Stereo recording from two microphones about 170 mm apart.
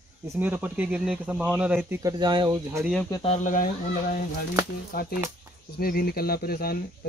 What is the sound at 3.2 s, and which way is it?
Speech, 45° left (ahead or behind).